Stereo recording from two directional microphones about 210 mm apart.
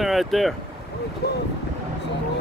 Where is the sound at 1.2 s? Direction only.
50° left (ahead or behind).